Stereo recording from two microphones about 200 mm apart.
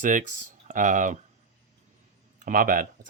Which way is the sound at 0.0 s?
40° right (ahead or behind).